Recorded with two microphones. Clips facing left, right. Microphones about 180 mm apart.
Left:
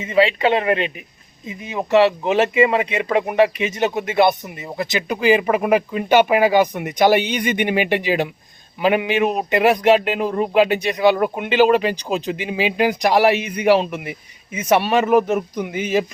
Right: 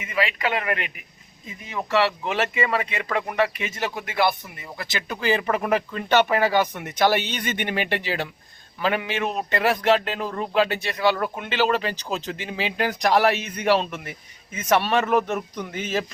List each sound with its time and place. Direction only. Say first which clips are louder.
0.0 s speech: left 9 dB; 30° left (ahead or behind); by 16.0 s 10° left (ahead or behind)